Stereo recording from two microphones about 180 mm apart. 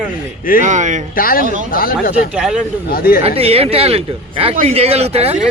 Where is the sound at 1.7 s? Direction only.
55° left (ahead or behind).